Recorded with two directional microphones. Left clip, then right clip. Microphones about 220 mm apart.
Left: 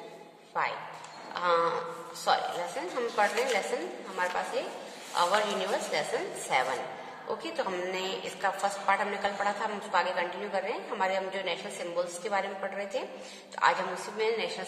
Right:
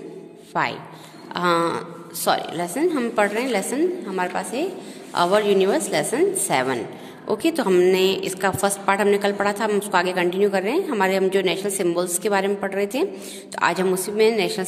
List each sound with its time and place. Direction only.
0.5 s a woman's voice: 45° right (ahead or behind)